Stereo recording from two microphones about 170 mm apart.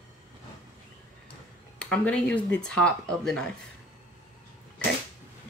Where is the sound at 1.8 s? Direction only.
5° left (ahead or behind).